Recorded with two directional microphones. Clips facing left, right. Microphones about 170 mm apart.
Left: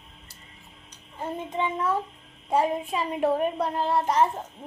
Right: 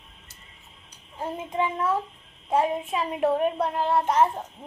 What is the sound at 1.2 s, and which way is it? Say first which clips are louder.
A child's voice: right 1 dB; 5° right (ahead or behind).